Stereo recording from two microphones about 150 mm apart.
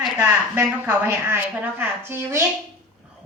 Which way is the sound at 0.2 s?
15° right (ahead or behind).